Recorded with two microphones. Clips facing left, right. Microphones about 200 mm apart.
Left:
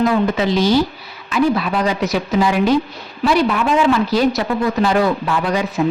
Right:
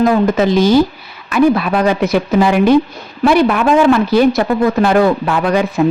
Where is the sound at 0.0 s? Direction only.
45° right (ahead or behind).